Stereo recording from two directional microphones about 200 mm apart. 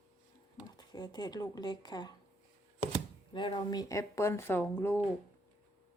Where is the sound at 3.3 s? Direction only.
25° left (ahead or behind).